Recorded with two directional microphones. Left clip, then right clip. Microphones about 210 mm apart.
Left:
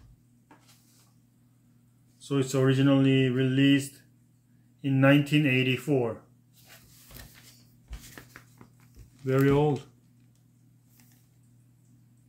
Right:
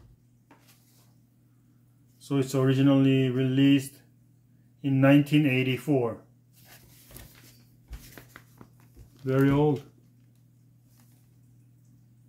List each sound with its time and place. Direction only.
2.1 s speech: 5° left (ahead or behind)
4.8 s speech: 5° left (ahead or behind)
8.1 s a sound: 10° right (ahead or behind)
9.2 s speech: 15° left (ahead or behind)